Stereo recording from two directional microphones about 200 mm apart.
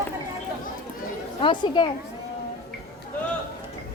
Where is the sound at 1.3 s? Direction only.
25° left (ahead or behind).